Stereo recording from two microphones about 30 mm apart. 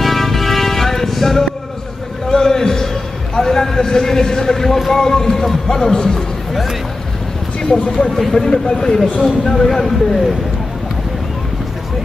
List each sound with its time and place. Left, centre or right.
0.0 s music: centre
2.2 s a sound: centre
3.3 s speech: centre
8.3 s speech: left; by 10.3 s centre